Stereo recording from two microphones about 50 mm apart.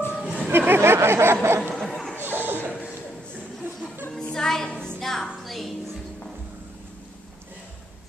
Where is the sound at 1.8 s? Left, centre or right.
Centre.